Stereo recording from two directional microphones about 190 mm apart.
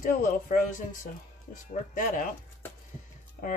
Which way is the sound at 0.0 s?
45° left (ahead or behind).